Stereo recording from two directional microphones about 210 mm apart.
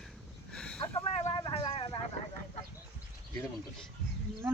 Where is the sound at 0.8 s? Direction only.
20° left (ahead or behind).